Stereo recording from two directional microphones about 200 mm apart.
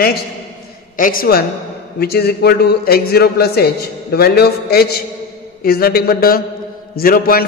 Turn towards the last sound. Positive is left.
turn(degrees=45)  # may be behind; listen again after turning